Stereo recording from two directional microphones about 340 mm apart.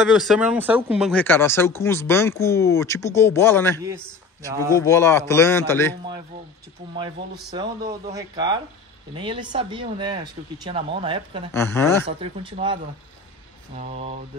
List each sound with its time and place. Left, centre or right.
0.0 s speech: centre
4.5 s speech: centre
4.8 s speech: centre
8.1 s speech: centre
11.5 s speech: centre
12.1 s speech: centre